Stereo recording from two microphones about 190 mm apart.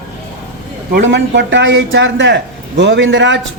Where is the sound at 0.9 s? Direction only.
70° right (ahead or behind).